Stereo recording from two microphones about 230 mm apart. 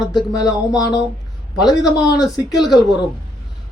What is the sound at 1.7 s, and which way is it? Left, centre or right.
Speech, centre.